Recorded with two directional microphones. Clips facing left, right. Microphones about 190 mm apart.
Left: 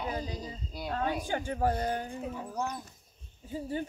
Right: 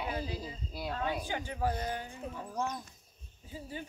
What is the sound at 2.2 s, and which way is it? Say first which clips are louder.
Speech: left 2 dB; 10° left (ahead or behind).